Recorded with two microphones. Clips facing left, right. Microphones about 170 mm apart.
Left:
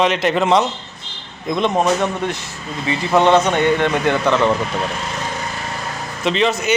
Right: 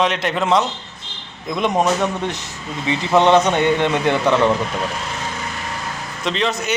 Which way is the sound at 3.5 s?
15° right (ahead or behind).